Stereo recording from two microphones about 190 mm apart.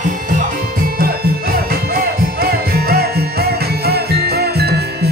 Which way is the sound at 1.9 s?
50° right (ahead or behind).